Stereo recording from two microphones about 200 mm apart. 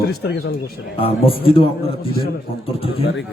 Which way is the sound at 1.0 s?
25° left (ahead or behind).